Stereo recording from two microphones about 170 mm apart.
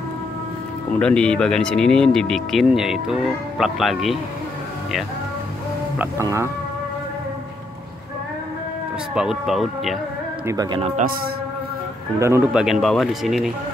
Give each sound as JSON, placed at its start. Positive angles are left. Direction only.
{"t": 0.9, "sound": "speech", "side_deg": 5}
{"t": 5.9, "sound": "speech", "side_deg": -15}
{"t": 9.1, "sound": "speech", "side_deg": -5}
{"t": 10.4, "sound": "speech", "side_deg": -20}
{"t": 12.2, "sound": "speech", "side_deg": -15}
{"t": 12.5, "sound": "speech", "side_deg": -5}